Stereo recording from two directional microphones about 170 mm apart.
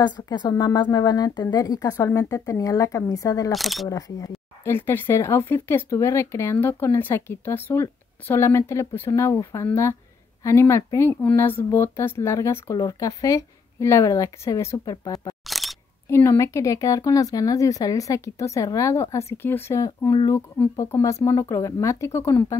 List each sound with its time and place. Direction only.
0.0 s speech: 25° left (ahead or behind)
3.5 s speech: centre (ahead or behind)
3.9 s speech: 15° left (ahead or behind)
15.4 s single-lens reflex camera: centre (ahead or behind)
16.1 s speech: 15° left (ahead or behind)